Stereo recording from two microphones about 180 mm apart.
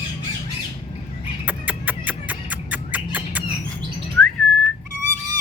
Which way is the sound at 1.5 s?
10° right (ahead or behind).